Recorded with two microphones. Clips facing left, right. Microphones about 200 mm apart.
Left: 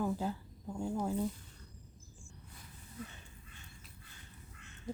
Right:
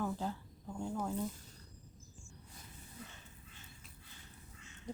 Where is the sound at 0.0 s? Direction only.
10° left (ahead or behind).